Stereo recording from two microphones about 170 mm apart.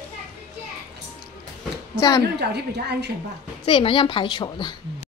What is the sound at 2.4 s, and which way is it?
Speech, 75° right (ahead or behind).